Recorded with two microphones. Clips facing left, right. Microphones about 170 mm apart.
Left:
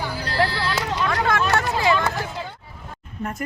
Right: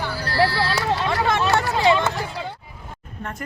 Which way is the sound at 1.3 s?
20° right (ahead or behind).